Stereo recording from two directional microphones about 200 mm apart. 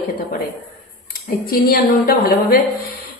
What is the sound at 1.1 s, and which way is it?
A woman's voice, 45° left (ahead or behind).